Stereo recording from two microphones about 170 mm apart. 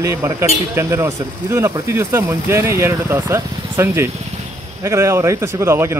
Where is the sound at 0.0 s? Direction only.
15° right (ahead or behind).